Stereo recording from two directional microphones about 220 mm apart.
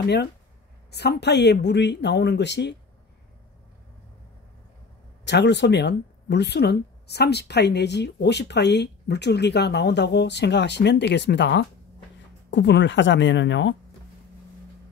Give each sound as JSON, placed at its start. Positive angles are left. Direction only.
{"t": 0.0, "sound": "speech", "side_deg": 50}
{"t": 5.2, "sound": "speech", "side_deg": 50}